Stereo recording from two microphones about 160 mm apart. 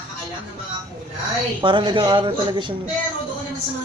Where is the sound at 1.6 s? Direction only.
30° right (ahead or behind).